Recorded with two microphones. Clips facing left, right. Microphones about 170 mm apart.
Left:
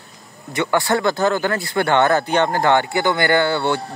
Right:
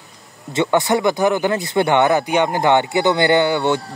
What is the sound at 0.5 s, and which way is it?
Speech, 20° right (ahead or behind).